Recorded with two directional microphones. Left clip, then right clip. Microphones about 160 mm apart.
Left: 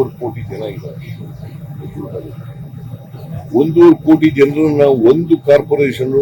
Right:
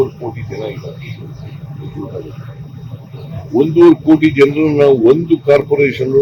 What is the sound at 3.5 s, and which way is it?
A man's voice, 20° left (ahead or behind).